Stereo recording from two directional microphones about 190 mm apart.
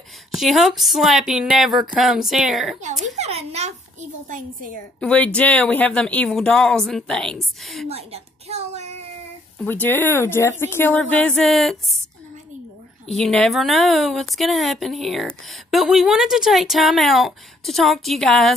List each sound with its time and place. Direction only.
0.3 s a woman's voice: centre (ahead or behind)
3.2 s a sound: 35° right (ahead or behind)
5.0 s a woman's voice: 5° left (ahead or behind)
7.9 s a sound: 35° right (ahead or behind)
9.7 s speech: 10° left (ahead or behind)
13.1 s a woman's voice: centre (ahead or behind)